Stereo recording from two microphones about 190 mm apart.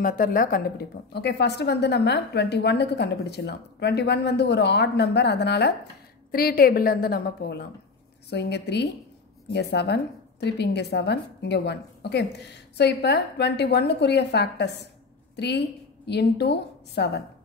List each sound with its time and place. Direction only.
0.0 s a woman's voice: 45° left (ahead or behind)